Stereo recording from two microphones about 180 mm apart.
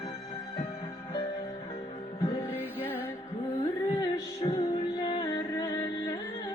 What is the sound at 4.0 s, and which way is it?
Music, 25° left (ahead or behind).